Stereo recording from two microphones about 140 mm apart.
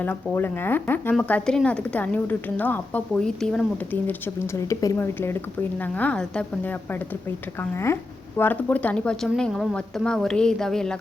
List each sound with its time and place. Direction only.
0.0 s a woman's voice: 15° left (ahead or behind)